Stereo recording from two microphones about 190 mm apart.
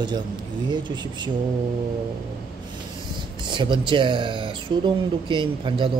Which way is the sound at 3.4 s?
25° right (ahead or behind).